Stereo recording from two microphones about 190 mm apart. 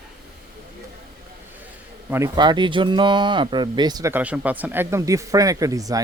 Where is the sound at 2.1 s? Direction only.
15° right (ahead or behind).